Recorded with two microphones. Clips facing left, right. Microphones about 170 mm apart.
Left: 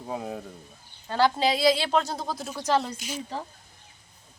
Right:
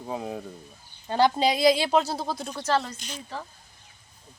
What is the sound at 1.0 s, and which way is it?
Speech, 20° right (ahead or behind).